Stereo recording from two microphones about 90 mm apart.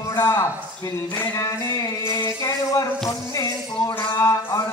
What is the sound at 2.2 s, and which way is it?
Music, 40° left (ahead or behind).